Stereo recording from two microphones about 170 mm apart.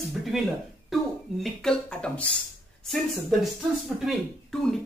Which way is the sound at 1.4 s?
5° left (ahead or behind).